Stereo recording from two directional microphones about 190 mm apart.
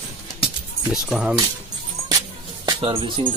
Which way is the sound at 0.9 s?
Centre (ahead or behind).